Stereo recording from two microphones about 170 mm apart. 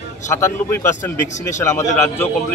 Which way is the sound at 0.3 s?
15° left (ahead or behind).